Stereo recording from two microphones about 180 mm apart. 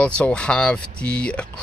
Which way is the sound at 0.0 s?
5° left (ahead or behind).